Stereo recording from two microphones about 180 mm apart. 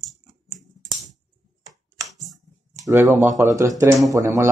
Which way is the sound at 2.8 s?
15° right (ahead or behind).